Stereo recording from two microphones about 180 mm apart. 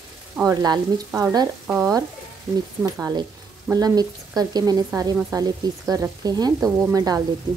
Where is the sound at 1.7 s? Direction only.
15° right (ahead or behind).